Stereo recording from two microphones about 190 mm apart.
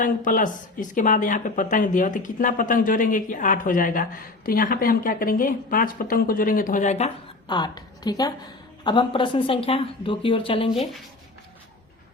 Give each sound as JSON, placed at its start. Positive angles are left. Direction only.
{"t": 0.0, "sound": "speech", "side_deg": 45}
{"t": 7.4, "sound": "a woman's voice", "side_deg": 20}